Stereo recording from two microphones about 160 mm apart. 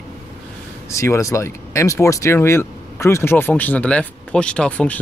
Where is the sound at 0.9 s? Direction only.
20° left (ahead or behind).